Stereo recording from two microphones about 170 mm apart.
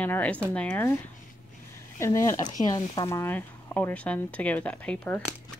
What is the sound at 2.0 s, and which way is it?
Speech, 20° left (ahead or behind).